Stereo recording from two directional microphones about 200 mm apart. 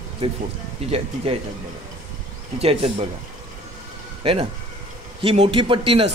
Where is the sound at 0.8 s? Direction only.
30° right (ahead or behind).